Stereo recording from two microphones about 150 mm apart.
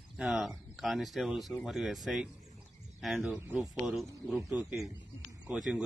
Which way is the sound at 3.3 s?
15° right (ahead or behind).